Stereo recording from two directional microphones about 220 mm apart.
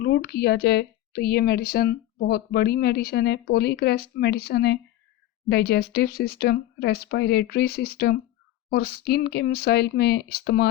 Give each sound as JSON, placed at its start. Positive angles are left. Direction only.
{"t": 0.0, "sound": "speech", "side_deg": 45}